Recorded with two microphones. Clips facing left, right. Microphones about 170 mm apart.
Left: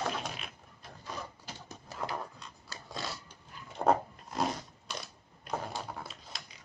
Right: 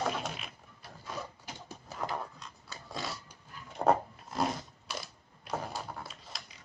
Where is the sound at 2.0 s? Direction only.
Centre (ahead or behind).